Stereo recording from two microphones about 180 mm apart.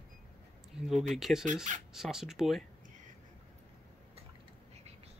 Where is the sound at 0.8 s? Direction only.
Centre (ahead or behind).